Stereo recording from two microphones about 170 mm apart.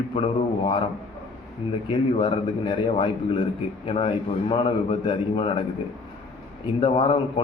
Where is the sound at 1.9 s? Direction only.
30° left (ahead or behind).